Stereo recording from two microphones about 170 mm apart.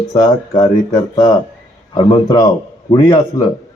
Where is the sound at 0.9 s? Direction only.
20° left (ahead or behind).